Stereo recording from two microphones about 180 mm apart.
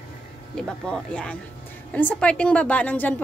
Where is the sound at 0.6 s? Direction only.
5° left (ahead or behind).